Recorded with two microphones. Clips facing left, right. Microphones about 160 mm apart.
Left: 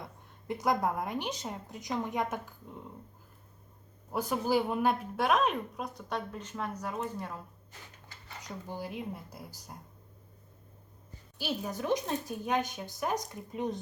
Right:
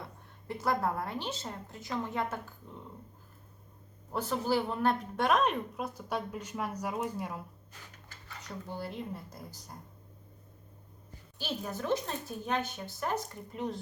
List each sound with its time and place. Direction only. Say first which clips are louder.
0.4 s a woman's voice: left 1 dB; 15° left (ahead or behind)
4.1 s speech: left 1 dB; 15° left (ahead or behind); by 7.4 s 10° right (ahead or behind)
8.6 s a woman's voice: left 1 dB; 10° left (ahead or behind)
11.3 s a woman's voice: left 2 dB; 10° left (ahead or behind)